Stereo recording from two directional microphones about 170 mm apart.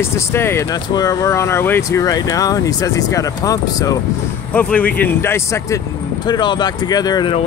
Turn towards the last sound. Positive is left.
turn(degrees=30)  # may be behind; listen again after turning